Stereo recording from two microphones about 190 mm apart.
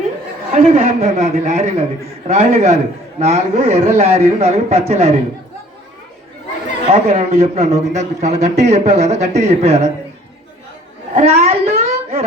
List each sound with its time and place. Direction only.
0.5 s a man's voice: 35° right (ahead or behind)
6.9 s a man's voice: 35° right (ahead or behind)
11.1 s a sound: 35° right (ahead or behind)